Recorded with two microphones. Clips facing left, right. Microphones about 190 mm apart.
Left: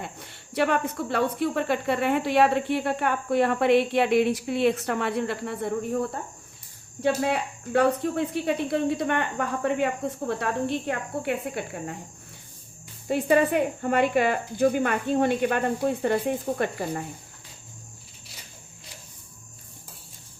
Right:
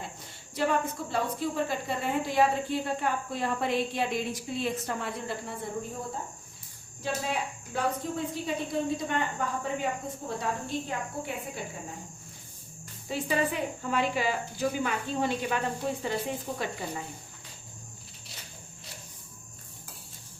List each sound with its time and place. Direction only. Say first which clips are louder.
0.0 s speech: left 4 dB; 65° left (ahead or behind)
13.1 s speech: left 8 dB; 55° left (ahead or behind)